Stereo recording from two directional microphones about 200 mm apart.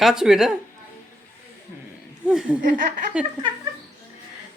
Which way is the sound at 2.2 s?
5° right (ahead or behind).